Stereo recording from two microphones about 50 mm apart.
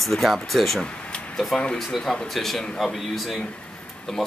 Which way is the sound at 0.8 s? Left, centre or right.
Left.